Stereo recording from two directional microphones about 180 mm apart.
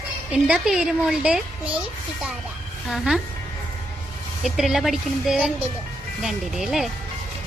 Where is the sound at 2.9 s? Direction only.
Centre (ahead or behind).